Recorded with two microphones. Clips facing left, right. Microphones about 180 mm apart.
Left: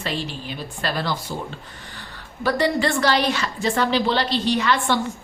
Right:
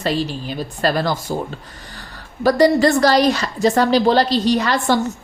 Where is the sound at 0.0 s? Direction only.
40° right (ahead or behind).